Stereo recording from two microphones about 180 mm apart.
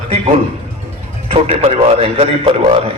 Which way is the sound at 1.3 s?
35° right (ahead or behind).